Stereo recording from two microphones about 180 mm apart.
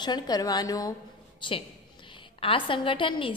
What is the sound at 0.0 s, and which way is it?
A woman's voice, 25° left (ahead or behind).